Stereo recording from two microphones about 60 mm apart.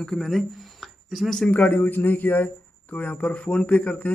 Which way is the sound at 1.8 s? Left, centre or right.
Left.